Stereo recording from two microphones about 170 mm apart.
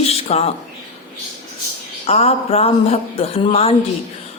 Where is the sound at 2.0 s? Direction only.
35° left (ahead or behind).